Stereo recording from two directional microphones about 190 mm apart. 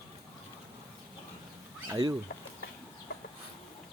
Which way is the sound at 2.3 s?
65° left (ahead or behind).